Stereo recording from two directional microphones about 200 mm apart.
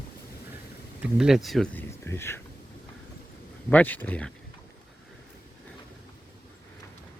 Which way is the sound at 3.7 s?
10° left (ahead or behind).